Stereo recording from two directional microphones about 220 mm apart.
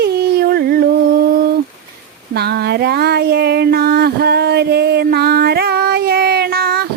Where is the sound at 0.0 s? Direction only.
45° right (ahead or behind).